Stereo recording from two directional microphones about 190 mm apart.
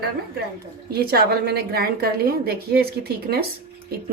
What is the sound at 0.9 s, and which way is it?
A woman's voice, 55° right (ahead or behind).